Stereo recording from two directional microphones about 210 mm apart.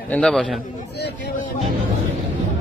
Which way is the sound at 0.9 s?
50° left (ahead or behind).